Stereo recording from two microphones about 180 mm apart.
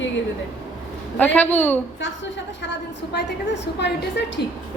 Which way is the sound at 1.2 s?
10° left (ahead or behind).